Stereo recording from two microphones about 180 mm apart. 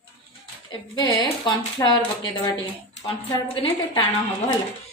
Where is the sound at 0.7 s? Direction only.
20° left (ahead or behind).